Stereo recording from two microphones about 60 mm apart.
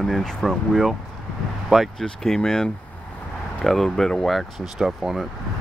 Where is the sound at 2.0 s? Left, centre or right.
Centre.